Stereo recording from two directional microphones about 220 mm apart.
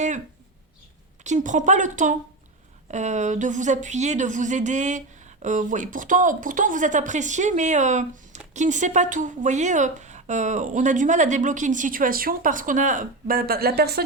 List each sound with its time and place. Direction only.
1.2 s speech: 35° right (ahead or behind)